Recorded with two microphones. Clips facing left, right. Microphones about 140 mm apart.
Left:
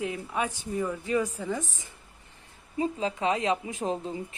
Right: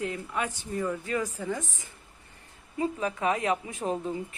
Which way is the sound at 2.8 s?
25° left (ahead or behind).